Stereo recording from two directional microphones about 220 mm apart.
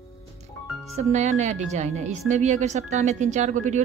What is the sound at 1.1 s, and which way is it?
A woman's voice, 30° right (ahead or behind).